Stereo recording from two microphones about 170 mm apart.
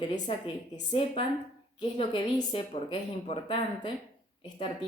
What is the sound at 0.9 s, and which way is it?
A woman's voice, 30° left (ahead or behind).